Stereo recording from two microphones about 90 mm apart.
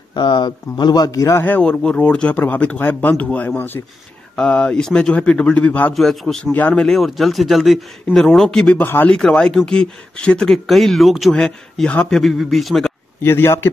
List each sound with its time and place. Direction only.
0.1 s speech: 55° left (ahead or behind); by 1.4 s 35° left (ahead or behind)
1.6 s speech: 10° left (ahead or behind)
5.9 s speech: 5° left (ahead or behind)
8.8 s a man's voice: 20° left (ahead or behind)
9.1 s speech: 10° left (ahead or behind)
13.2 s a man's voice: 30° left (ahead or behind)